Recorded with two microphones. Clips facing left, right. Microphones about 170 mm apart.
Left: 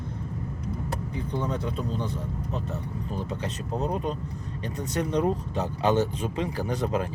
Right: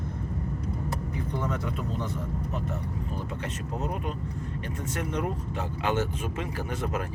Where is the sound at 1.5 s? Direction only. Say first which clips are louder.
Left 2 dB; 30° left (ahead or behind).